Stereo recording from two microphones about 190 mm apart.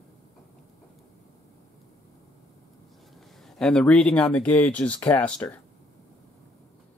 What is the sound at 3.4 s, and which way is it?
Speech, 5° left (ahead or behind).